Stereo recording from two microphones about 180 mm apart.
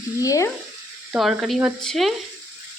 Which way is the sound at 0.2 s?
20° left (ahead or behind).